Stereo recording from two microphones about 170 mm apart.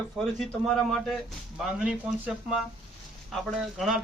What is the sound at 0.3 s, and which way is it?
A man's voice, centre (ahead or behind).